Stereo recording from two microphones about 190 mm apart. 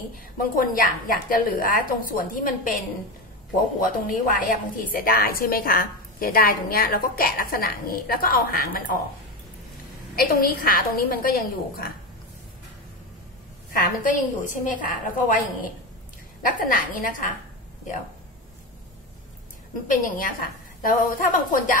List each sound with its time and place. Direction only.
0.1 s a woman's voice: 50° left (ahead or behind)
3.8 s a woman's voice: 45° left (ahead or behind)
10.1 s a woman's voice: 50° left (ahead or behind)
13.7 s a woman's voice: 45° left (ahead or behind)
19.9 s a woman's voice: 45° left (ahead or behind)